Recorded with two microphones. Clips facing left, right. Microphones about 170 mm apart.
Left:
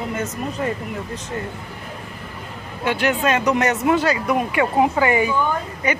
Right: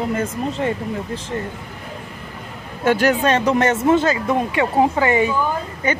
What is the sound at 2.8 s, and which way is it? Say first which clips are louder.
Speech: right 4 dB; 45° right (ahead or behind).